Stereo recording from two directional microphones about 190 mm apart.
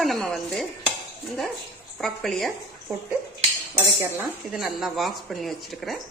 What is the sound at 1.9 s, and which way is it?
Speech, centre (ahead or behind).